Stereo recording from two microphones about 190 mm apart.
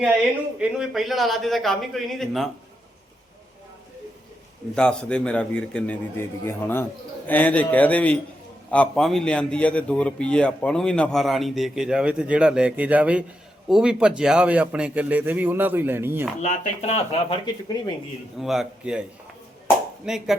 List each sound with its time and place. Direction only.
0.0 s a man's voice: 5° right (ahead or behind)
4.7 s a man's voice: 5° left (ahead or behind); by 16.2 s 10° right (ahead or behind)
16.4 s speech: 35° left (ahead or behind)
18.3 s a man's voice: centre (ahead or behind)
20.1 s a man's voice: centre (ahead or behind)